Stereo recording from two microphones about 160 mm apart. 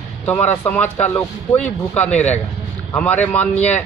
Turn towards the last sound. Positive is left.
turn(degrees=10)  # may be behind; listen again after turning